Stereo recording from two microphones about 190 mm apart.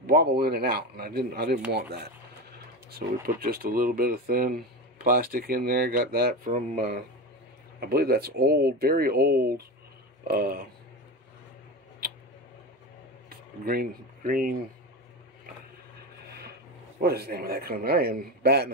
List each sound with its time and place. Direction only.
0.0 s a man's voice: 55° right (ahead or behind)
3.4 s speech: 50° right (ahead or behind)
13.3 s speech: 50° right (ahead or behind)
17.0 s a man's voice: 55° right (ahead or behind)